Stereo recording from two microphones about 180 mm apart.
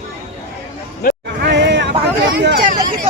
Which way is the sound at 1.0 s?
55° left (ahead or behind).